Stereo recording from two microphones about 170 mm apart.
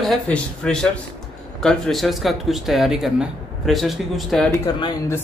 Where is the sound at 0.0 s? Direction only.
Centre (ahead or behind).